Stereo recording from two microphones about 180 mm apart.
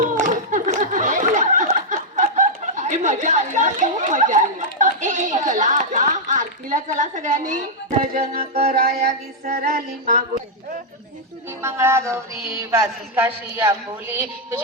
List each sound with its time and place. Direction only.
0.0 s a sound: 45° right (ahead or behind)
8.4 s music: 55° right (ahead or behind)
11.4 s speech: 15° right (ahead or behind)